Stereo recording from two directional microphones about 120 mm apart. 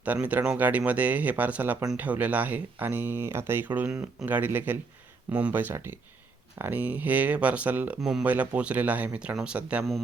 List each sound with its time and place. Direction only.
0.0 s speech: 15° right (ahead or behind)